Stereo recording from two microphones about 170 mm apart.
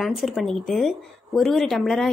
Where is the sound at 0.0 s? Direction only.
Centre (ahead or behind).